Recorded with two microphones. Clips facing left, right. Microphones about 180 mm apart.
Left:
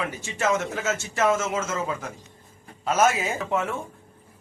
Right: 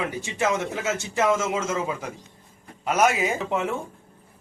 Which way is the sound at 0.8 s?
15° right (ahead or behind).